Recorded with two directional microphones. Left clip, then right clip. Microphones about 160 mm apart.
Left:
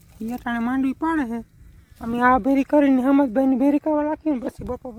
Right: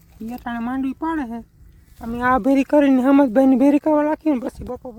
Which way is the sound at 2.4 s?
25° right (ahead or behind).